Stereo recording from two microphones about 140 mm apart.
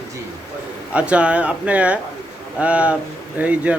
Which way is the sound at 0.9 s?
10° right (ahead or behind).